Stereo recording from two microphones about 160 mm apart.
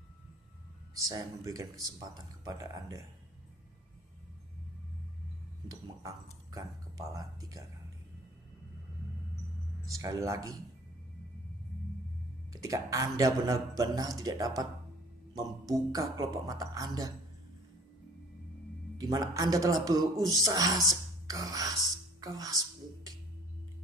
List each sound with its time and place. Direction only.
0.9 s a man's voice: 20° right (ahead or behind)
6.5 s a man's voice: 20° right (ahead or behind)
9.8 s a man's voice: 20° right (ahead or behind)
12.5 s a man's voice: 20° right (ahead or behind)
18.9 s a man's voice: 20° right (ahead or behind)